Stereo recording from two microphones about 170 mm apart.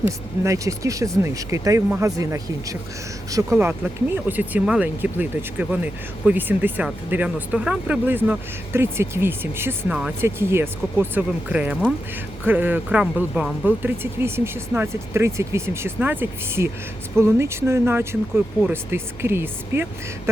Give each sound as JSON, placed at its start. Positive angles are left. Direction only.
{"t": 0.4, "sound": "speech", "side_deg": -20}